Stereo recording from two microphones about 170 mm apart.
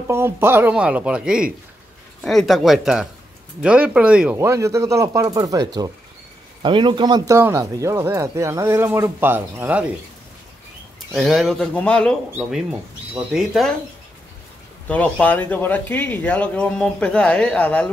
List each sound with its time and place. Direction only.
0.1 s speech: 15° right (ahead or behind)
4.4 s speech: 15° right (ahead or behind)
11.1 s speech: centre (ahead or behind)
14.9 s speech: 10° left (ahead or behind)